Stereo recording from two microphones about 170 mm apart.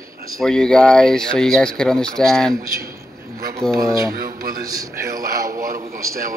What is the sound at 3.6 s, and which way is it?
Speech, 5° left (ahead or behind).